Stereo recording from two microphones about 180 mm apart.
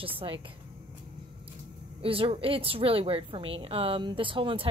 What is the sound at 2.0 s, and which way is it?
A woman's voice, 30° right (ahead or behind).